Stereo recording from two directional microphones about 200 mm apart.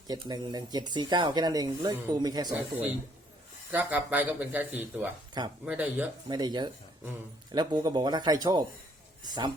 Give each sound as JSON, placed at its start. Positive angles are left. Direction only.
{"t": 0.1, "sound": "speech", "side_deg": -20}
{"t": 3.7, "sound": "speech", "side_deg": -10}
{"t": 6.2, "sound": "speech", "side_deg": -20}